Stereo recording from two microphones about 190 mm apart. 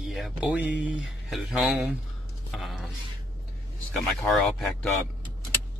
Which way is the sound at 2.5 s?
Centre (ahead or behind).